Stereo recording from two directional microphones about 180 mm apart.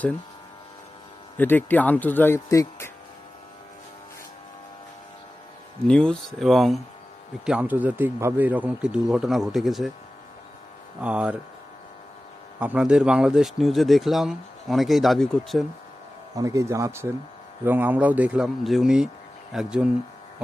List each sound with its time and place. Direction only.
1.4 s speech: 10° left (ahead or behind)
5.9 s a man's voice: 5° left (ahead or behind)
11.0 s speech: 5° right (ahead or behind)
12.5 s a man's voice: 5° right (ahead or behind)
16.3 s a man's voice: 20° right (ahead or behind)